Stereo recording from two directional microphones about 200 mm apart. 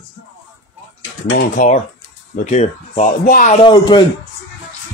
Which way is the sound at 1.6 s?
45° left (ahead or behind).